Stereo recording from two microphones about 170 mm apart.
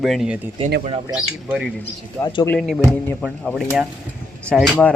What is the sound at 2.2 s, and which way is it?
Speech, 25° left (ahead or behind).